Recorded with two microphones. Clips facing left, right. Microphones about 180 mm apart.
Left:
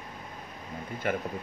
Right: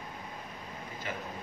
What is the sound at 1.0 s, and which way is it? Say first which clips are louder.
Speech: left 10 dB; 55° left (ahead or behind).